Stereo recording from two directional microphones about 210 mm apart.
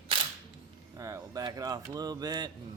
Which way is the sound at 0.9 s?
15° right (ahead or behind).